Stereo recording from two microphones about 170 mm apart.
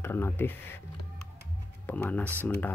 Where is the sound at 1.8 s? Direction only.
10° left (ahead or behind).